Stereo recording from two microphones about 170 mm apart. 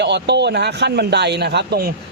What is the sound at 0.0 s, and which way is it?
A man's voice, 90° right.